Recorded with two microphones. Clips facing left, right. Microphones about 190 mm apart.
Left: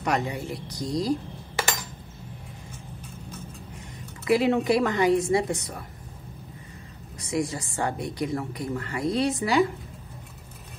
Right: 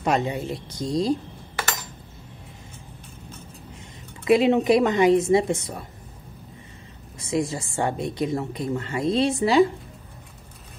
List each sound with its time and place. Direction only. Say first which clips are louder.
0.0 s a woman's voice: right 3 dB; 25° right (ahead or behind)
4.2 s a woman's voice: right 4 dB; 20° right (ahead or behind)
7.2 s a woman's voice: right 3 dB; 25° right (ahead or behind)